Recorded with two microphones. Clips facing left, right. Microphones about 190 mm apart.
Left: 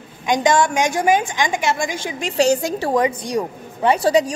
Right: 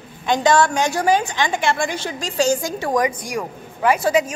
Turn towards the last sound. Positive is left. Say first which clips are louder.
# left 2 dB
turn(degrees=35)  # may be behind; listen again after turning